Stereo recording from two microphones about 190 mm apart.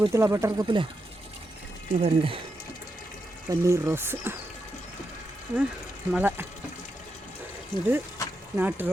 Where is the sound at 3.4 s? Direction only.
15° right (ahead or behind).